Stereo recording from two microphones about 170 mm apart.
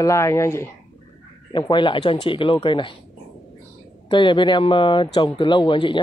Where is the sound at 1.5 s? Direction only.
25° left (ahead or behind).